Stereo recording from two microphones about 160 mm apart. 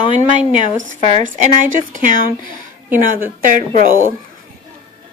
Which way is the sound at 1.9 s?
55° right (ahead or behind).